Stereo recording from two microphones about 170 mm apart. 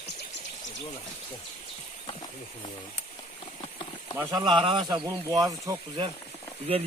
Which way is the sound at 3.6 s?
30° left (ahead or behind).